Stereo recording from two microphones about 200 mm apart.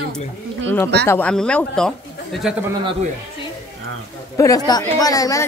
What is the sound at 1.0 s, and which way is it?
Speech, 10° left (ahead or behind).